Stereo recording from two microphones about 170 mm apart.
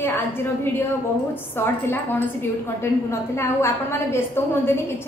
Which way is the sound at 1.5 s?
15° left (ahead or behind).